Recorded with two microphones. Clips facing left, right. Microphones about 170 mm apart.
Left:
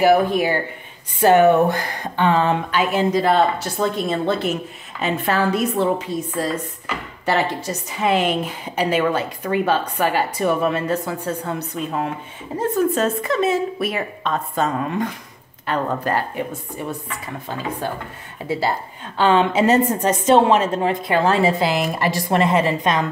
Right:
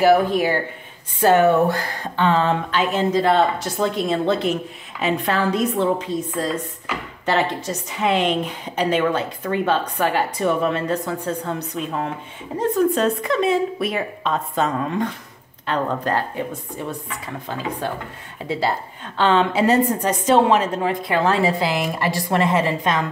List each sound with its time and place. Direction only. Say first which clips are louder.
0.0 s speech: even; 15° left (ahead or behind)
19.1 s a woman's voice: left 1 dB; 10° left (ahead or behind)